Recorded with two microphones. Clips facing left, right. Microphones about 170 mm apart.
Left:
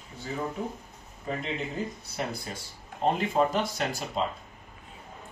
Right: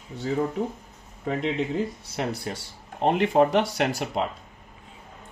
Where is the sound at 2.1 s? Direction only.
70° right (ahead or behind).